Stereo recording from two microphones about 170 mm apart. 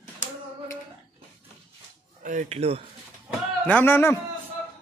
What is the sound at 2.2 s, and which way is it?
Speech, 50° right (ahead or behind).